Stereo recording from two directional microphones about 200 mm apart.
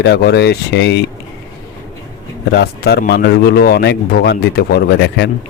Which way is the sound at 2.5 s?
55° left (ahead or behind).